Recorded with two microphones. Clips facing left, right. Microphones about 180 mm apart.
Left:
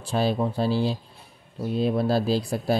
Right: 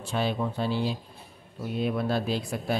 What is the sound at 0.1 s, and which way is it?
Speech, 35° left (ahead or behind).